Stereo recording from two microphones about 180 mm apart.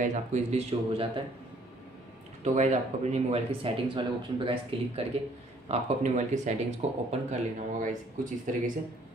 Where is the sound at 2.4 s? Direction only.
40° right (ahead or behind).